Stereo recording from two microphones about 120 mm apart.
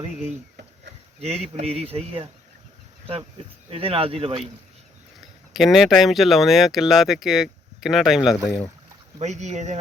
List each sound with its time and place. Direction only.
0.0 s speech: 70° right (ahead or behind)
1.2 s speech: 60° right (ahead or behind)
3.7 s speech: 50° right (ahead or behind)
5.5 s speech: centre (ahead or behind)
9.2 s speech: 75° right (ahead or behind)